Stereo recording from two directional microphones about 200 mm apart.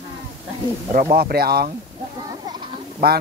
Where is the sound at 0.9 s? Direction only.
45° right (ahead or behind).